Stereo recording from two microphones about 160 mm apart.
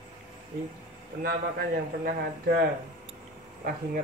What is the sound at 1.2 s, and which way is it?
A man's voice, 65° right (ahead or behind).